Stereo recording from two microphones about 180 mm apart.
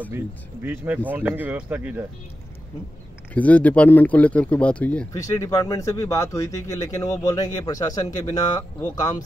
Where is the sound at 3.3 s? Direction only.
10° left (ahead or behind).